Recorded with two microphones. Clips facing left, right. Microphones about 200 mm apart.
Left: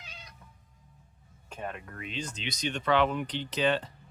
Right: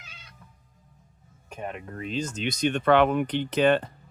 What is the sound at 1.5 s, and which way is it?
Speech, 15° right (ahead or behind).